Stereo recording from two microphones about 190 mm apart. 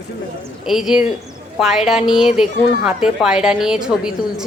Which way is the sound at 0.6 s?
Centre (ahead or behind).